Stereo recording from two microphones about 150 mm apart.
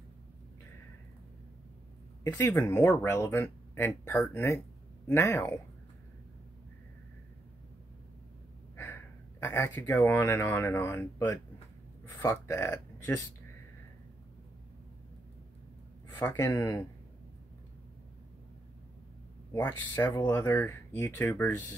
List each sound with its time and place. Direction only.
2.2 s speech: 15° left (ahead or behind)
8.7 s speech: 15° left (ahead or behind)
16.1 s speech: 15° left (ahead or behind)
19.5 s speech: 15° left (ahead or behind)